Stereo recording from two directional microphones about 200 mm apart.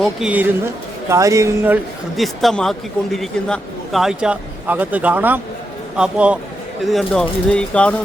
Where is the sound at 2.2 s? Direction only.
Centre (ahead or behind).